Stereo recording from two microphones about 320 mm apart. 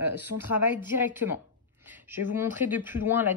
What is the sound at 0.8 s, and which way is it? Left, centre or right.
Speech, centre.